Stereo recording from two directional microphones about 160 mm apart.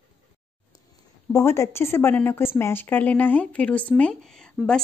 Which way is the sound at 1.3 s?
15° left (ahead or behind).